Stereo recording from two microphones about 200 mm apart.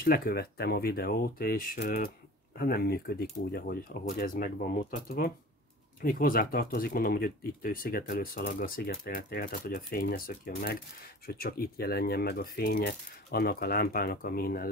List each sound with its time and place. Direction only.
0.0 s speech: 45° left (ahead or behind)